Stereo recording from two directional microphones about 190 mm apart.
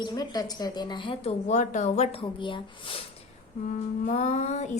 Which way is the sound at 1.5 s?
40° left (ahead or behind).